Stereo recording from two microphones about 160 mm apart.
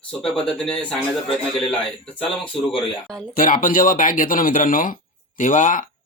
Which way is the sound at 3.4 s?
60° left (ahead or behind).